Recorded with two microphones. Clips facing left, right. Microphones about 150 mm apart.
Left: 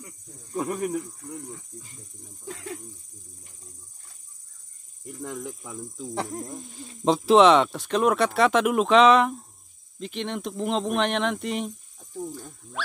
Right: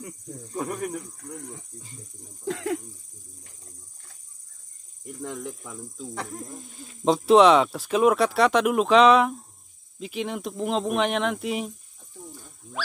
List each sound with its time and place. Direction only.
0.5 s speech: 5° left (ahead or behind)
2.4 s speech: 80° right
5.2 s speech: 5° left (ahead or behind)